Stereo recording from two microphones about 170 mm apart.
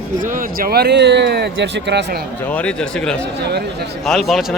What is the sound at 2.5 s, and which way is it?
Speech, 5° left (ahead or behind).